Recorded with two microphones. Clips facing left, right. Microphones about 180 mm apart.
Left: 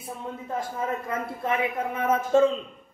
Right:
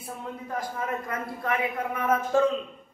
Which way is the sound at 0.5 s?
25° left (ahead or behind).